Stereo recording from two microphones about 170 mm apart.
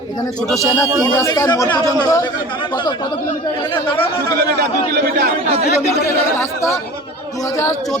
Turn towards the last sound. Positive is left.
turn(degrees=15)  # may be behind; listen again after turning